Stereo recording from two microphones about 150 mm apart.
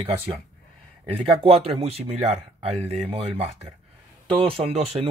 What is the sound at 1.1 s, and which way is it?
Speech, 40° right (ahead or behind).